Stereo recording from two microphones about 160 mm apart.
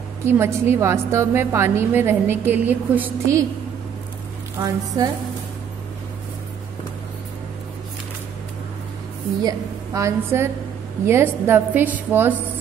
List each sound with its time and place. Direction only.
0.2 s a woman's voice: 15° right (ahead or behind)
4.6 s a woman's voice: 20° right (ahead or behind)
9.4 s a woman's voice: 20° right (ahead or behind)